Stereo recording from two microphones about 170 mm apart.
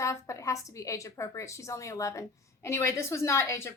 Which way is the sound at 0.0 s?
15° left (ahead or behind).